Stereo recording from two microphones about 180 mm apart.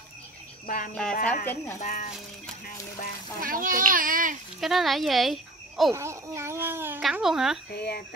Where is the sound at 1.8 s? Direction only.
45° left (ahead or behind).